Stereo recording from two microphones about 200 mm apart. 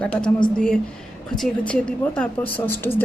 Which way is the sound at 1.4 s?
5° left (ahead or behind).